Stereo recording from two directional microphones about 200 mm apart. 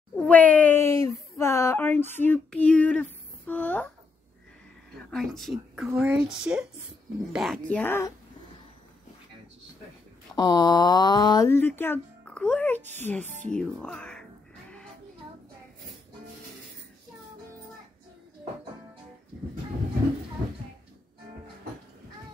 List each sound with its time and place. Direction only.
0.1 s a sound: 5° left (ahead or behind)
1.4 s speech: 15° left (ahead or behind)
5.1 s speech: centre (ahead or behind)
10.3 s speech: 20° left (ahead or behind)